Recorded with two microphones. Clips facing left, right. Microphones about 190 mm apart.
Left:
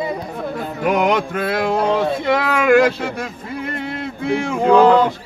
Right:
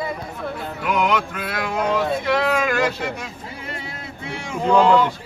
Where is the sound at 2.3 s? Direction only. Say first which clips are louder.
Left 7 dB; 60° left (ahead or behind).